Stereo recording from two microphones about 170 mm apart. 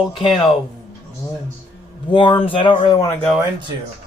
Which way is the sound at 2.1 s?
30° left (ahead or behind).